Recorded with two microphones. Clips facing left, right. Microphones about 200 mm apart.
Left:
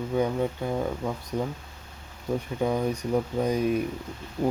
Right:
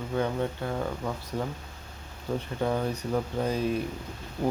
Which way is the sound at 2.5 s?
10° left (ahead or behind).